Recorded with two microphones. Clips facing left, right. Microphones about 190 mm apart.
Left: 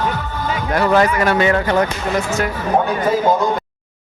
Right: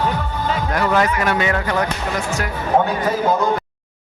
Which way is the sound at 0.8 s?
30° left (ahead or behind).